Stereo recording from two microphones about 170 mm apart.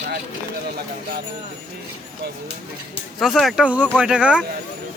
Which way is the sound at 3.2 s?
Centre (ahead or behind).